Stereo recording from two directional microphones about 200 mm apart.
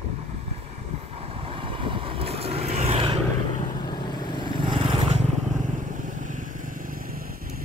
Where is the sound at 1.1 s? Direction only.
30° right (ahead or behind).